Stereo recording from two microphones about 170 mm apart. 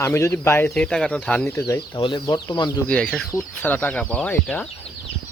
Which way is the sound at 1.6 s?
25° left (ahead or behind).